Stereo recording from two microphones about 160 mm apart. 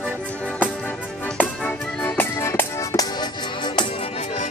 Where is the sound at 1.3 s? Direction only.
5° left (ahead or behind); by 3.8 s 25° left (ahead or behind).